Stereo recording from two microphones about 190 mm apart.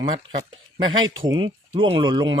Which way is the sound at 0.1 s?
25° right (ahead or behind).